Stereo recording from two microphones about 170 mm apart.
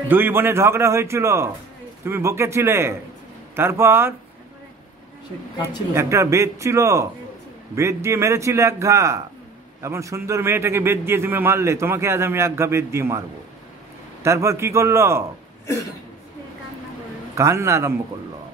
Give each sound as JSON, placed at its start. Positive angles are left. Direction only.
{"t": 0.1, "sound": "a man's voice", "side_deg": -10}
{"t": 5.9, "sound": "a man's voice", "side_deg": -15}
{"t": 14.2, "sound": "a man's voice", "side_deg": -20}
{"t": 17.4, "sound": "a man's voice", "side_deg": -15}